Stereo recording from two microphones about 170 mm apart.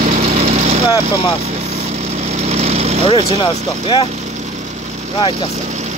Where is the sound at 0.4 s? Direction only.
35° right (ahead or behind).